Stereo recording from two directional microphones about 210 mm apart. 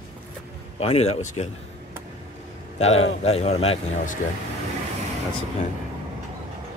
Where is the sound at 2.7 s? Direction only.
30° left (ahead or behind).